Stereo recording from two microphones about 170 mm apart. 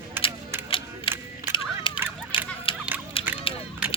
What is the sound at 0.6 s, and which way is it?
Music, 30° left (ahead or behind).